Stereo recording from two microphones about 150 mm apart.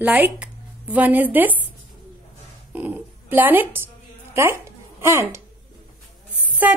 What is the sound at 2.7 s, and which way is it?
Speech, 10° right (ahead or behind).